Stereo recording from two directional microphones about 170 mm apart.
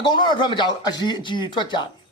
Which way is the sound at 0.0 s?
25° left (ahead or behind).